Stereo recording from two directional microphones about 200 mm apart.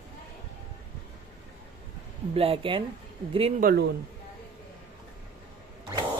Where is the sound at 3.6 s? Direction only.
50° right (ahead or behind).